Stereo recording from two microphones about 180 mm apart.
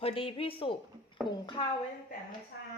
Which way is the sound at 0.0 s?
30° left (ahead or behind).